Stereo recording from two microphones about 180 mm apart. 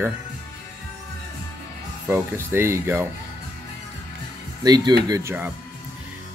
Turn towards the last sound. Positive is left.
turn(degrees=-15)  # may be behind; listen again after turning